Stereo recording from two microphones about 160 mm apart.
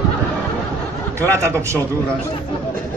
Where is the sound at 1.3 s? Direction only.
15° right (ahead or behind).